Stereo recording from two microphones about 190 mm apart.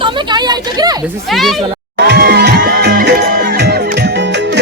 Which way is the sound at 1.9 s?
65° right (ahead or behind).